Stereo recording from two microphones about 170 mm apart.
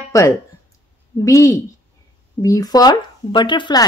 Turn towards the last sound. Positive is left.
turn(degrees=25)  # may be behind; listen again after turning